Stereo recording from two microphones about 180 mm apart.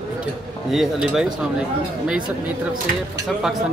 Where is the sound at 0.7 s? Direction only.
Centre (ahead or behind).